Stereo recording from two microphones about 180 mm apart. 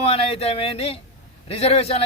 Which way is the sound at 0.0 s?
35° left (ahead or behind).